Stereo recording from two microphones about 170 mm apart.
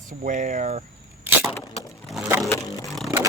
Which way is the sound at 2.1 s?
Centre (ahead or behind).